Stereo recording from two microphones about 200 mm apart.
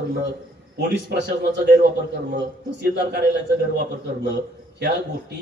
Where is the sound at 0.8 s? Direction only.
55° right (ahead or behind).